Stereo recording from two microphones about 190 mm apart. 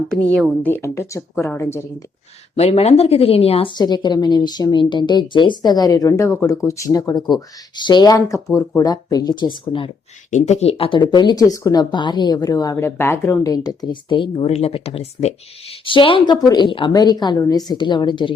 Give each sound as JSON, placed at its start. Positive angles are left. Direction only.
{"t": 0.1, "sound": "a woman's voice", "side_deg": 5}
{"t": 2.6, "sound": "speech", "side_deg": 35}
{"t": 10.3, "sound": "speech", "side_deg": 35}